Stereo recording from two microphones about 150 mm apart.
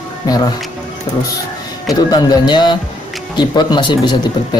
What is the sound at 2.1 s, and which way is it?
Speech, 30° left (ahead or behind).